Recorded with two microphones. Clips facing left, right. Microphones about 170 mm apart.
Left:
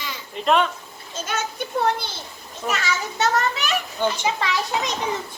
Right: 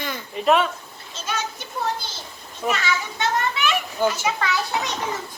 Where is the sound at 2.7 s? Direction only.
40° left (ahead or behind).